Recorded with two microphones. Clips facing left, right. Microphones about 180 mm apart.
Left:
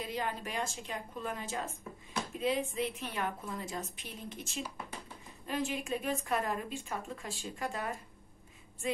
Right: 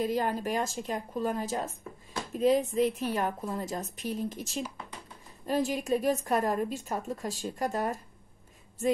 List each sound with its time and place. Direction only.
0.0 s a woman's voice: 45° right (ahead or behind)